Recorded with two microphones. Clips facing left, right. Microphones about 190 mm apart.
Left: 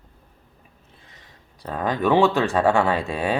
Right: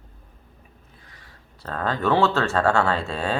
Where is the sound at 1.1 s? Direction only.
15° left (ahead or behind).